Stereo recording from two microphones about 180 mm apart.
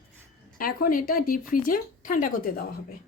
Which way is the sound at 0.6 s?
50° left (ahead or behind).